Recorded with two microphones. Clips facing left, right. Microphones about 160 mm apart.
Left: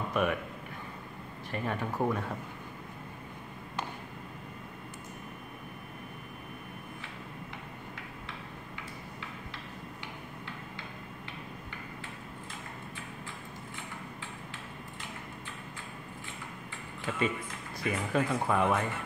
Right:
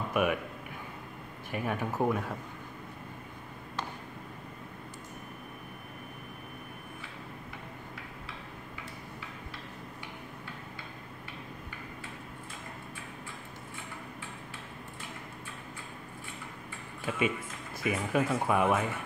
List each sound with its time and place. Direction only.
0.1 s a man's voice: 10° right (ahead or behind)
1.5 s speech: 10° right (ahead or behind)
17.8 s speech: 10° right (ahead or behind)